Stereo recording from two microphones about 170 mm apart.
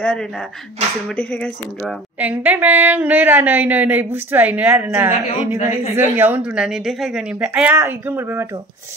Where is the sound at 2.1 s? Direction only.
10° right (ahead or behind).